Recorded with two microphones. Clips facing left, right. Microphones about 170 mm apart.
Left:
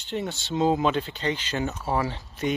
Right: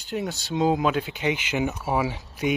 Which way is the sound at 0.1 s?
5° right (ahead or behind).